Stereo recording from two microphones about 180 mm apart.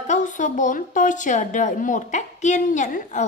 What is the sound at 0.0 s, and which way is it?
A woman's voice, 45° left (ahead or behind).